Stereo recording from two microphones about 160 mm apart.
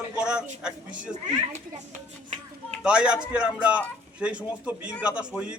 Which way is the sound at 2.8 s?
5° right (ahead or behind).